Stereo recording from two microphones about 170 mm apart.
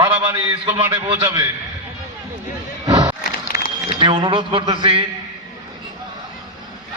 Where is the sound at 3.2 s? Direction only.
70° left (ahead or behind).